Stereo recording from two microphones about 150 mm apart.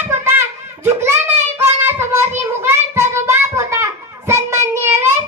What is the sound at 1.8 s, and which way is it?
Child singing, 15° right (ahead or behind).